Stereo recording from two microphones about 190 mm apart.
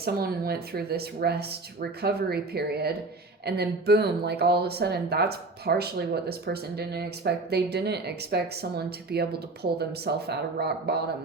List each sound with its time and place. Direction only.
0.0 s a woman's voice: 55° right (ahead or behind)